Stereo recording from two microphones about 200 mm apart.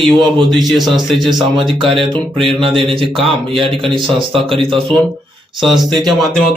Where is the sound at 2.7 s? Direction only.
Centre (ahead or behind).